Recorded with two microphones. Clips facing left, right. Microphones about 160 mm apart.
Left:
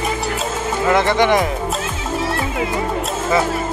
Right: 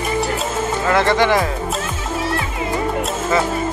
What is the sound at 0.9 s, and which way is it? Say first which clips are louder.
Speech: left 1 dB; 15° left (ahead or behind).